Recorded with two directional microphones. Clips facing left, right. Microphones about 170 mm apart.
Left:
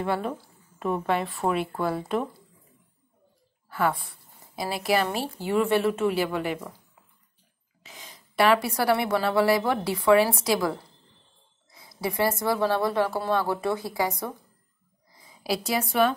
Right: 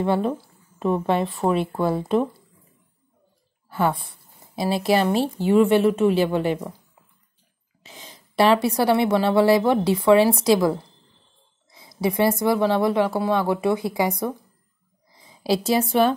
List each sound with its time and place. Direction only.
0.0 s speech: 25° right (ahead or behind)
3.6 s speech: 25° right (ahead or behind)
7.8 s a woman's voice: 25° right (ahead or behind)